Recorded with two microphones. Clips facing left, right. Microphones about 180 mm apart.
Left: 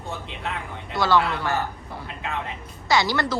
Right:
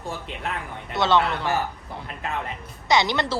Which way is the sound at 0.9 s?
20° right (ahead or behind).